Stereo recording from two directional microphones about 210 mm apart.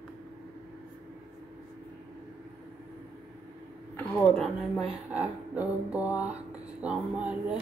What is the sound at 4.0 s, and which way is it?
Speech, centre (ahead or behind).